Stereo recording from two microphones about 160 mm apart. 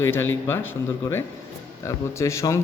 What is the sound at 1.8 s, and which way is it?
Speech, 20° left (ahead or behind).